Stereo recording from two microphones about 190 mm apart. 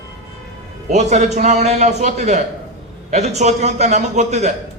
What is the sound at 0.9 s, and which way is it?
A man's voice, 35° right (ahead or behind).